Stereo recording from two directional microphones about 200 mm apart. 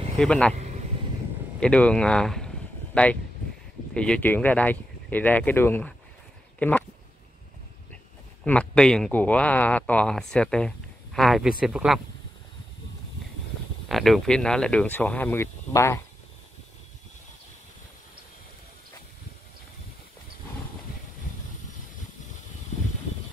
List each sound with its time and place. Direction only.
0.2 s speech: 5° left (ahead or behind)
0.6 s a sound: 35° right (ahead or behind)
1.6 s speech: 5° left (ahead or behind)
8.5 s speech: 5° left (ahead or behind)
13.8 s speech: centre (ahead or behind)